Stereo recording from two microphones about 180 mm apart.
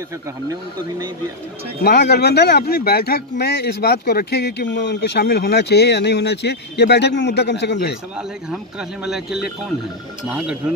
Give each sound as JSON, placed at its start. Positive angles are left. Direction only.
{"t": 1.8, "sound": "speech", "side_deg": 65}
{"t": 9.0, "sound": "speech", "side_deg": -5}